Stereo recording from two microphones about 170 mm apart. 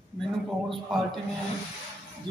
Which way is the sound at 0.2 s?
Centre (ahead or behind).